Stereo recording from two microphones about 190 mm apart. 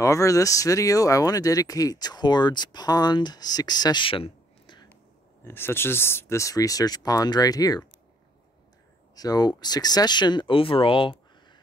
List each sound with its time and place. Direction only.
0.0 s speech: 15° left (ahead or behind)
5.4 s speech: 10° left (ahead or behind)
9.1 s speech: 20° left (ahead or behind)